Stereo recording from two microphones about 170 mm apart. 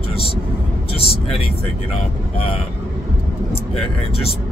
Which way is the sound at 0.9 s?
35° left (ahead or behind).